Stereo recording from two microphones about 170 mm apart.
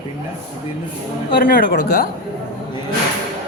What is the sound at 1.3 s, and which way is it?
Speech, 70° left (ahead or behind).